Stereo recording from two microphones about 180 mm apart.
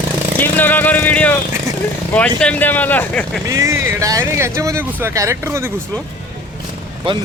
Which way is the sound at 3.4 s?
15° right (ahead or behind).